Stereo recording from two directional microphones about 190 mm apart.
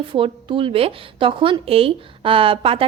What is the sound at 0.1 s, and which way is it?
A woman's voice, 25° right (ahead or behind).